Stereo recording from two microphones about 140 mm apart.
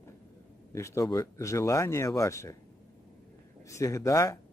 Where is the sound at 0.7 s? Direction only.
20° left (ahead or behind).